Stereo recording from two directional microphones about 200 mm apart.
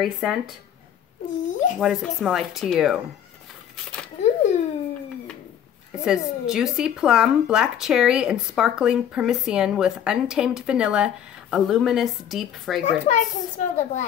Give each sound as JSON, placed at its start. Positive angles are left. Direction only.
{"t": 0.0, "sound": "speech", "side_deg": 0}
{"t": 1.4, "sound": "a child's voice", "side_deg": 40}
{"t": 1.8, "sound": "speech", "side_deg": 0}
{"t": 4.2, "sound": "a sound", "side_deg": 35}
{"t": 6.0, "sound": "speech", "side_deg": -5}
{"t": 13.0, "sound": "a child's voice", "side_deg": 35}